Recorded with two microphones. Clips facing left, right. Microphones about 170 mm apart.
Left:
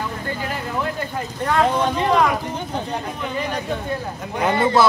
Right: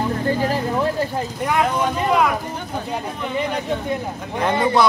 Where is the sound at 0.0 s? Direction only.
35° right (ahead or behind).